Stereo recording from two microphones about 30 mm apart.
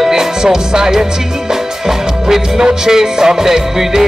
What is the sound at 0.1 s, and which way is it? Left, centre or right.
Music, right.